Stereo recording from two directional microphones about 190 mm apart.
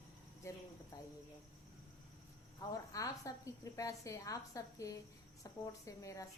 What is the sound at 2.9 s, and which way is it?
A woman's voice, 15° left (ahead or behind).